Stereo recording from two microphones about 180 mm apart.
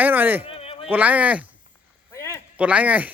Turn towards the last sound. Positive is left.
turn(degrees=-10)  # may be behind; listen again after turning